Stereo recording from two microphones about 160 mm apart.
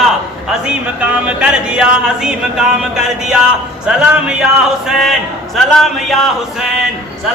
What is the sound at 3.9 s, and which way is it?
A man's voice, 5° right (ahead or behind).